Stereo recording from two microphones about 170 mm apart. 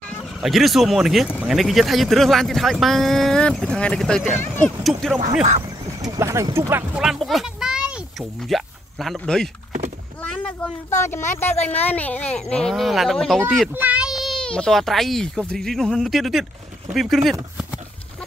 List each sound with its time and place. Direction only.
0.4 s speech: centre (ahead or behind)
6.0 s a child's voice: 15° right (ahead or behind); by 9.5 s 5° left (ahead or behind)
10.2 s a sound: 5° left (ahead or behind)
11.0 s speech: 15° left (ahead or behind)